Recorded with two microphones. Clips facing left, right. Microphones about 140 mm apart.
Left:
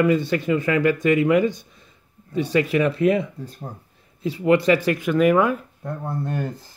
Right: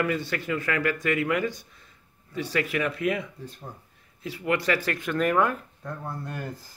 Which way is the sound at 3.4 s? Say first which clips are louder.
Left 5 dB; 40° left (ahead or behind).